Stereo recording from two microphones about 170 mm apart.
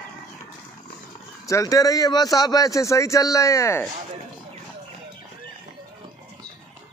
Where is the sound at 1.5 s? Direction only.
20° left (ahead or behind).